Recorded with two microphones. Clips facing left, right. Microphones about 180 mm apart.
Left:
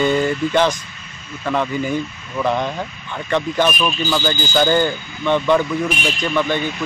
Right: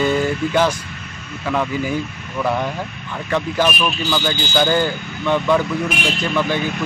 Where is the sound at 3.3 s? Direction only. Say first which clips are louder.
Left 1 dB; 5° right (ahead or behind).